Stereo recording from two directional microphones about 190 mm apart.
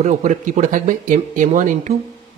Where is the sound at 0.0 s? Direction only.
35° right (ahead or behind).